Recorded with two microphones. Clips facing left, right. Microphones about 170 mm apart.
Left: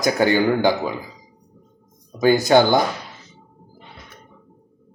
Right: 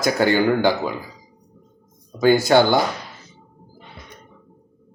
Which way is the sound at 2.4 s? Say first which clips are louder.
Left 2 dB; 20° left (ahead or behind).